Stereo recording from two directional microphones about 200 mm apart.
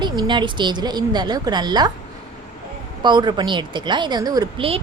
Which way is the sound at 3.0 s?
20° right (ahead or behind).